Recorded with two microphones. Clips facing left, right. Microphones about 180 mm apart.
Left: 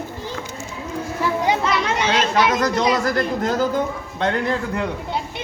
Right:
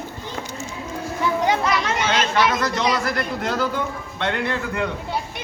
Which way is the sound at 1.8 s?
30° left (ahead or behind).